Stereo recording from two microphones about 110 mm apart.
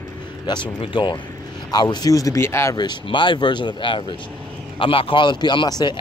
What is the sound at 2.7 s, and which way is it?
Speech, 40° left (ahead or behind).